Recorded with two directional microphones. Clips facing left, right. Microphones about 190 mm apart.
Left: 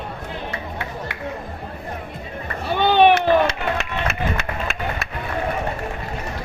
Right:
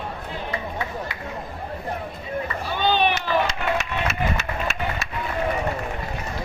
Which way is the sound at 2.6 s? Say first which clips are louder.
Left 8 dB; 60° left (ahead or behind).